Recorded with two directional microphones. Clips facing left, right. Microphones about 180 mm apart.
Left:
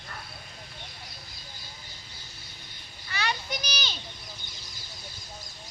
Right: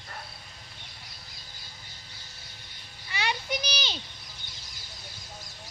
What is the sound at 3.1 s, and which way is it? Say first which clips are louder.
Children playing: right 1 dB; 20° right (ahead or behind).